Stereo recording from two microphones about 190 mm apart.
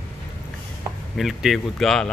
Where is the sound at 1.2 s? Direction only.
Centre (ahead or behind).